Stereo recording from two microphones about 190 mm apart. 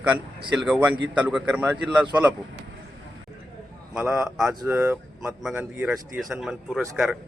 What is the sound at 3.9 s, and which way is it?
A man's voice, 5° right (ahead or behind).